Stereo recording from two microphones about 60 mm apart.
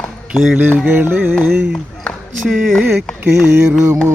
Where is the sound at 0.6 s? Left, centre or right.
Right.